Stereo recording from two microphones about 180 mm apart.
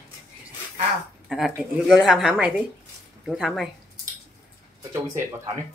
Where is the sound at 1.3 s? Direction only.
Centre (ahead or behind).